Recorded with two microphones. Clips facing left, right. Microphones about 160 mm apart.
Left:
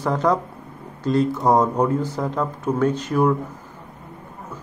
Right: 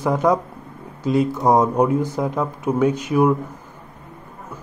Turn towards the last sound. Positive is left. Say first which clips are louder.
# right 2 dB
turn(degrees=-10)  # may be behind; listen again after turning